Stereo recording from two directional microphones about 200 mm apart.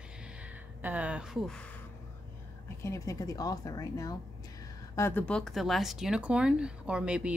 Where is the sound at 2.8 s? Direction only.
15° left (ahead or behind).